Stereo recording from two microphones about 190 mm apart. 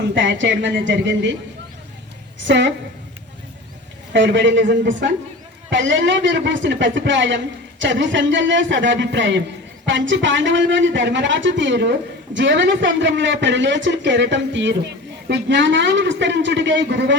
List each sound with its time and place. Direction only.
0.1 s a woman's voice: 75° right (ahead or behind)
2.5 s a woman's voice: 70° right (ahead or behind)
4.1 s a woman's voice: 70° right (ahead or behind)